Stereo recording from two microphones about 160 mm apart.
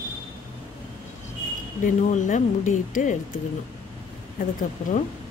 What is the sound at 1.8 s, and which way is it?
Speech, 50° left (ahead or behind).